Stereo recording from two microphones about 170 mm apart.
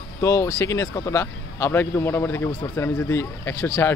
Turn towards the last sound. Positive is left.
turn(degrees=15)  # may be behind; listen again after turning